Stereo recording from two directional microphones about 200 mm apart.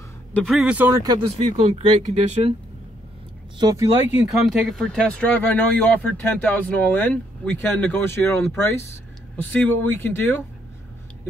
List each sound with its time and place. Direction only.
0.3 s speech: centre (ahead or behind)
1.0 s speech: 20° right (ahead or behind)
1.6 s speech: 35° right (ahead or behind)
3.5 s speech: 20° right (ahead or behind); by 10.4 s 10° left (ahead or behind)